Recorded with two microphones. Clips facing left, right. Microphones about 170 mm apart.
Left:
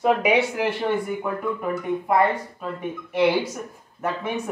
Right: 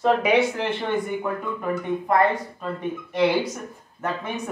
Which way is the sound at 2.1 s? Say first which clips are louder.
Even; 5° left (ahead or behind).